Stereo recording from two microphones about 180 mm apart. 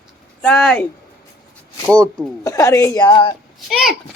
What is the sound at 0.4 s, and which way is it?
Speech, 5° left (ahead or behind).